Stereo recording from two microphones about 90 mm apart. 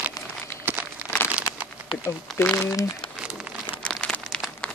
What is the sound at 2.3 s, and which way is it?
Speech, 25° left (ahead or behind).